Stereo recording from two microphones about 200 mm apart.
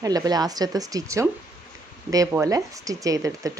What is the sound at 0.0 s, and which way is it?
Speech, 20° right (ahead or behind).